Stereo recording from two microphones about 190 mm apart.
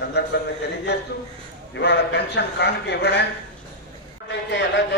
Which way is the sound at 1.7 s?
65° left (ahead or behind).